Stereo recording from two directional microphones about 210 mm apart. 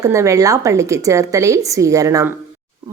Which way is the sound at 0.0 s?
15° right (ahead or behind).